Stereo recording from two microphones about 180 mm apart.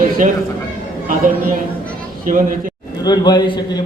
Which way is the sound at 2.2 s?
45° right (ahead or behind).